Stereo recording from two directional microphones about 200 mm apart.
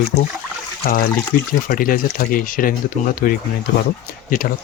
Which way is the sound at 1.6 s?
45° left (ahead or behind).